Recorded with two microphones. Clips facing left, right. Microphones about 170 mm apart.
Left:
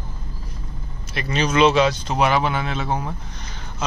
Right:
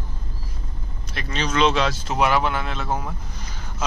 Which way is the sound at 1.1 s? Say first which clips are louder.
Left 4 dB; 5° left (ahead or behind).